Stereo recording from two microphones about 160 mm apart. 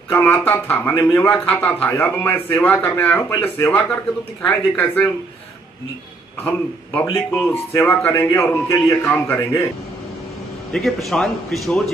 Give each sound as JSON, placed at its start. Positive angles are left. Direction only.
{"t": 0.1, "sound": "speech", "side_deg": 10}
{"t": 6.4, "sound": "speech", "side_deg": 10}
{"t": 10.7, "sound": "speech", "side_deg": 0}